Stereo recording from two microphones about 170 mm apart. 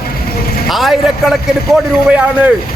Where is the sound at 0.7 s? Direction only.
Centre (ahead or behind).